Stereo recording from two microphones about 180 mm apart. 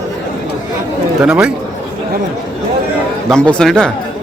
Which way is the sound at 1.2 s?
5° right (ahead or behind).